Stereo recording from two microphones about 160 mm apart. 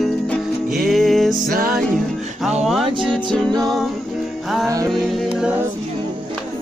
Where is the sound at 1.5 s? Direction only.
65° right (ahead or behind).